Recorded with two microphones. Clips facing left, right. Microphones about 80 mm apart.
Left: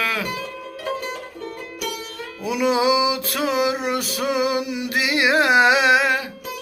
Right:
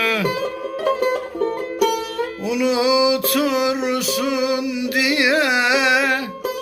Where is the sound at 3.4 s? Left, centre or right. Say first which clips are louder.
Right 2 dB; left.